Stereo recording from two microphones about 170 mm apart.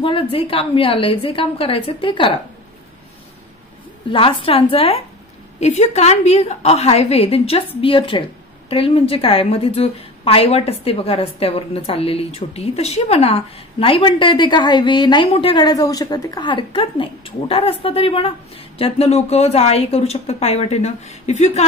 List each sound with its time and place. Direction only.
0.0 s a woman's voice: 30° left (ahead or behind)
4.1 s a woman's voice: 30° left (ahead or behind)